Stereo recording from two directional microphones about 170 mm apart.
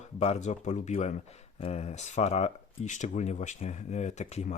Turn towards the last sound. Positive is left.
turn(degrees=40)  # may be behind; listen again after turning